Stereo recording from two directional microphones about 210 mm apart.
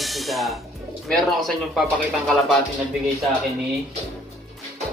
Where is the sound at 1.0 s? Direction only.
Centre (ahead or behind).